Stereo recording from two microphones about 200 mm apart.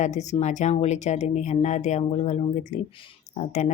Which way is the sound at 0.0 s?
35° left (ahead or behind).